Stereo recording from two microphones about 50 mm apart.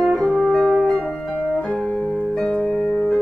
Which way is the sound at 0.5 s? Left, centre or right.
Centre.